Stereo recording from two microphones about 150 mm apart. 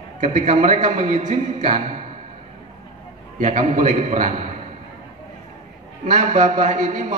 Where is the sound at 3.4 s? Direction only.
55° right (ahead or behind).